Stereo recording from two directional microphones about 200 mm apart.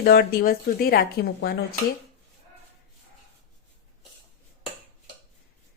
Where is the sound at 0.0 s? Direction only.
50° left (ahead or behind).